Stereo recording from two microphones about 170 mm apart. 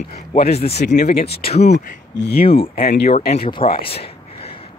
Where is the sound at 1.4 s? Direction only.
40° left (ahead or behind).